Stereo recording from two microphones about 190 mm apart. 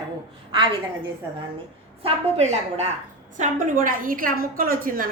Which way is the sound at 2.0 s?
35° right (ahead or behind).